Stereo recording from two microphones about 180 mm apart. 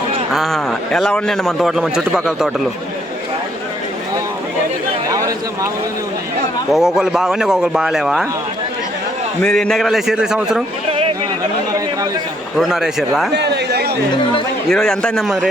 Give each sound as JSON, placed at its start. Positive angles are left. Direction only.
{"t": 0.3, "sound": "a man's voice", "side_deg": 0}
{"t": 5.0, "sound": "a sound", "side_deg": -20}
{"t": 6.7, "sound": "a man's voice", "side_deg": 0}
{"t": 9.4, "sound": "a man's voice", "side_deg": 5}
{"t": 12.5, "sound": "a man's voice", "side_deg": 0}
{"t": 13.3, "sound": "a sound", "side_deg": -65}
{"t": 14.7, "sound": "a man's voice", "side_deg": 5}